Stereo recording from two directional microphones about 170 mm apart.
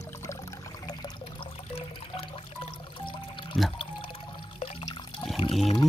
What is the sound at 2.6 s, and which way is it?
Pour, 30° left (ahead or behind).